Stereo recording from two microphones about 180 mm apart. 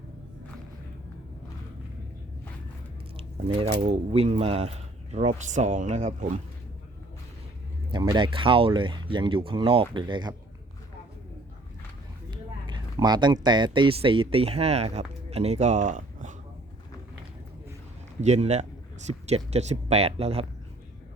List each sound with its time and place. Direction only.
3.7 s speech: 45° right (ahead or behind)
7.9 s speech: 25° right (ahead or behind)
12.3 s speech: 25° right (ahead or behind); by 16.3 s 45° right (ahead or behind)
18.2 s speech: 40° right (ahead or behind)